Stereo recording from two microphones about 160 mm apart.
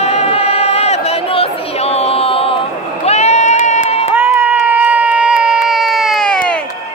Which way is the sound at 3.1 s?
45° left (ahead or behind).